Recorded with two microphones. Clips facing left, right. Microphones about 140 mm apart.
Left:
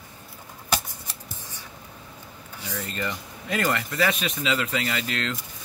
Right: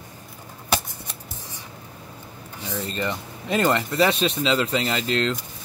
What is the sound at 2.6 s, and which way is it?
Speech, 25° right (ahead or behind).